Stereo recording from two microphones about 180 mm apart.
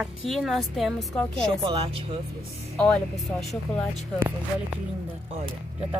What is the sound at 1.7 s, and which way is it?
Speech, 30° right (ahead or behind).